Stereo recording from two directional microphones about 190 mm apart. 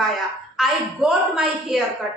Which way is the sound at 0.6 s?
Centre (ahead or behind).